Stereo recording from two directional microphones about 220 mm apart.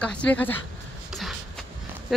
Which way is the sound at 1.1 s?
Centre (ahead or behind).